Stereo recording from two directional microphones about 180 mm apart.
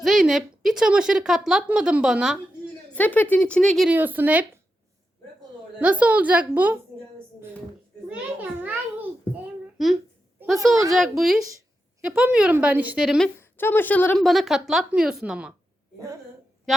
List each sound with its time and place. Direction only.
0.0 s speech: centre (ahead or behind)
2.9 s speech: 10° left (ahead or behind)
3.9 s a woman's voice: 10° right (ahead or behind)
5.8 s a woman's voice: 10° right (ahead or behind)
8.0 s a woman's voice: 10° right (ahead or behind)
13.4 s a woman's voice: 10° left (ahead or behind); by 15.5 s 5° right (ahead or behind)
16.0 s a woman's voice: 20° right (ahead or behind)